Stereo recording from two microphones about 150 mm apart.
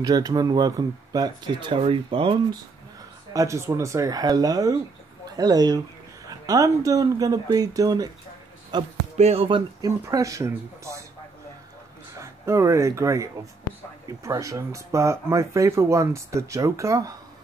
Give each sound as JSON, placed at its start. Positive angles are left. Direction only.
{"t": 0.0, "sound": "speech", "side_deg": -25}
{"t": 3.3, "sound": "speech", "side_deg": -20}
{"t": 9.1, "sound": "speech", "side_deg": -45}
{"t": 9.8, "sound": "speech", "side_deg": -20}
{"t": 12.2, "sound": "speech", "side_deg": -20}